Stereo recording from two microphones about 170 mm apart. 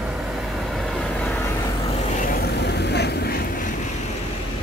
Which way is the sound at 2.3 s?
70° left (ahead or behind).